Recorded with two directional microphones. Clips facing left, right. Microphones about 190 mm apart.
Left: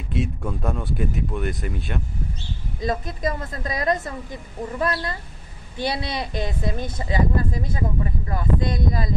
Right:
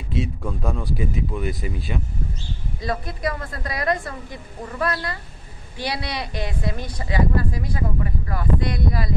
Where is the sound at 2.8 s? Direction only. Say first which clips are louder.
Left 1 dB; 20° left (ahead or behind).